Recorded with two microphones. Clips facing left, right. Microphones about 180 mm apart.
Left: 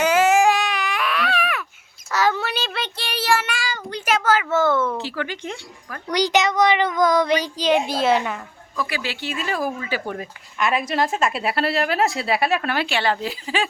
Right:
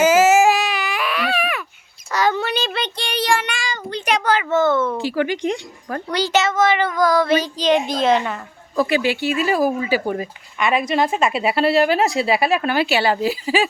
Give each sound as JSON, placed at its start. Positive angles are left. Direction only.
{"t": 0.0, "sound": "baby cry", "side_deg": -5}
{"t": 2.1, "sound": "child singing", "side_deg": 5}
{"t": 4.5, "sound": "a child's voice", "side_deg": 10}
{"t": 4.9, "sound": "speech", "side_deg": -10}
{"t": 6.1, "sound": "a child's voice", "side_deg": 15}
{"t": 8.7, "sound": "speech", "side_deg": -30}
{"t": 9.0, "sound": "speech", "side_deg": -15}